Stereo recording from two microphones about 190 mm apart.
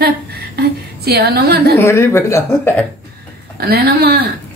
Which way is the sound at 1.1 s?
55° right (ahead or behind).